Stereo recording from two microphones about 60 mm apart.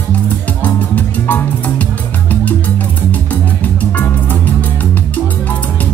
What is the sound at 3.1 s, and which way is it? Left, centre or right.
Music, left.